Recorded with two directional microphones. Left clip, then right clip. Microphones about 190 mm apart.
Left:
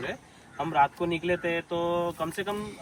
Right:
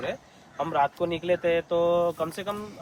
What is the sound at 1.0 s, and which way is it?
Speech, 25° right (ahead or behind).